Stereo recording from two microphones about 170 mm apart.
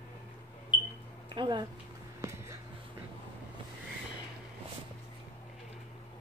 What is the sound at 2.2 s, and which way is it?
Music, 15° right (ahead or behind).